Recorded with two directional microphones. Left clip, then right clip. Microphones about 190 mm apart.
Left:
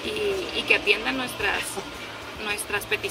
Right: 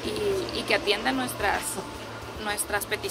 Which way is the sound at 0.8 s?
30° right (ahead or behind).